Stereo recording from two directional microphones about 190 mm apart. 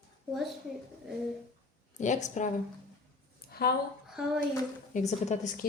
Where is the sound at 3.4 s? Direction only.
55° left (ahead or behind).